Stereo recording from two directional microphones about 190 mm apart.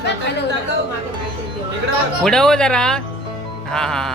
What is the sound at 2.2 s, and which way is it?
Speech, centre (ahead or behind).